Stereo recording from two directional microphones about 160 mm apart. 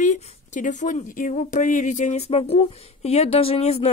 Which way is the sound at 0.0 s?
50° left (ahead or behind).